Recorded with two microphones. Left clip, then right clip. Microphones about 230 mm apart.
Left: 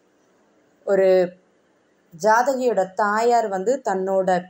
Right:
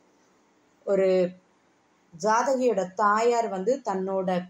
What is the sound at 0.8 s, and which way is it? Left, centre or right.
Speech, centre.